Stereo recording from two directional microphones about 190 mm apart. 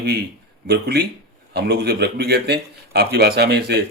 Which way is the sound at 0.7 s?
55° right (ahead or behind).